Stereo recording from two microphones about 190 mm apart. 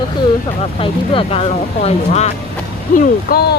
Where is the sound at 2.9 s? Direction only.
45° left (ahead or behind).